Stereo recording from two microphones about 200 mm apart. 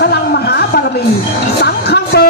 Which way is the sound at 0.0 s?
55° left (ahead or behind).